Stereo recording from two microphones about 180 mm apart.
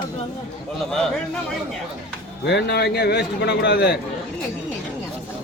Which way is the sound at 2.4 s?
65° left (ahead or behind).